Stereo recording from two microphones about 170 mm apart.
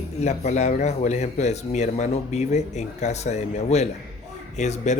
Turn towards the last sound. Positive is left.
turn(degrees=45)  # may be behind; listen again after turning